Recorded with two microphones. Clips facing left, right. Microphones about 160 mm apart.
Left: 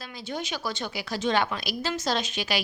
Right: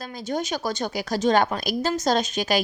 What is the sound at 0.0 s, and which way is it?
A woman's voice, 45° right (ahead or behind).